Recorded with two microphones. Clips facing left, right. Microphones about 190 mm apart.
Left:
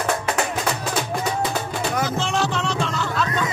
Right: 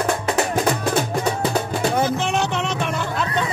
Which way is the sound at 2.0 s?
20° right (ahead or behind).